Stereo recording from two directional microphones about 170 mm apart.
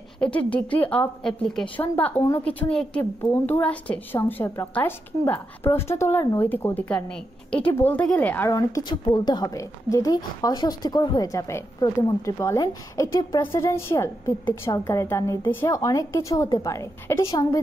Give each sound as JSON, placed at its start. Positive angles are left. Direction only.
{"t": 0.2, "sound": "a woman's voice", "side_deg": 5}
{"t": 8.5, "sound": "a woman's voice", "side_deg": 20}